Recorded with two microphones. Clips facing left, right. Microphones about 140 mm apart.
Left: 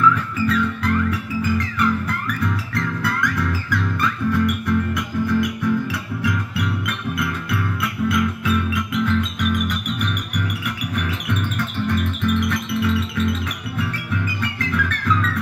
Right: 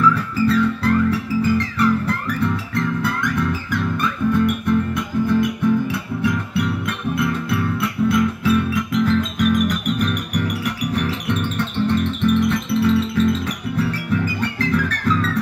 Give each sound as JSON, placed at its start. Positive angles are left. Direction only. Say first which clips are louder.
{"t": 0.1, "sound": "music", "louder": "right 3 dB", "side_deg": -35}